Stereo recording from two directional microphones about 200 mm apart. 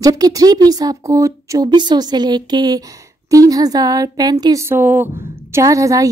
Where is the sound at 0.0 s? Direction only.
20° right (ahead or behind).